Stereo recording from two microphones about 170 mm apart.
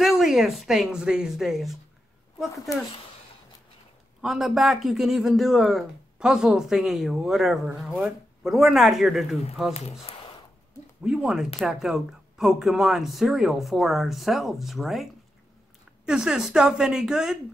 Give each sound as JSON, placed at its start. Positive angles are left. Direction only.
{"t": 0.0, "sound": "a man's voice", "side_deg": 0}
{"t": 4.2, "sound": "a man's voice", "side_deg": 0}
{"t": 10.1, "sound": "a sound", "side_deg": 35}
{"t": 11.1, "sound": "a man's voice", "side_deg": -5}
{"t": 16.1, "sound": "a man's voice", "side_deg": -5}